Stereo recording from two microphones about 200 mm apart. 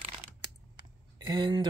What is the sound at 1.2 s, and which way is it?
Speech, 20° right (ahead or behind).